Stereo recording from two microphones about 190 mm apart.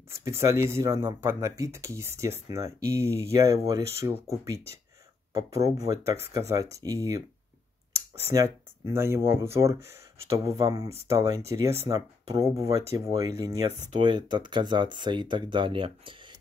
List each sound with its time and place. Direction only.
0.1 s speech: 15° right (ahead or behind)
8.3 s speech: 15° right (ahead or behind)